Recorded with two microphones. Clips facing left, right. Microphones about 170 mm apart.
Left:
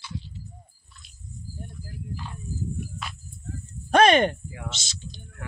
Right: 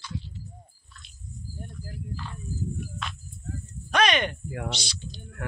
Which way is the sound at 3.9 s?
50° left (ahead or behind).